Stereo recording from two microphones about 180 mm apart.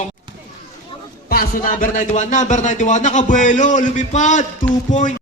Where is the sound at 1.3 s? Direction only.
55° left (ahead or behind).